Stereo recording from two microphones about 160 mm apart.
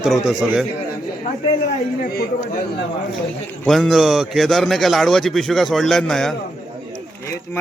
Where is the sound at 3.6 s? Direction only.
Centre (ahead or behind).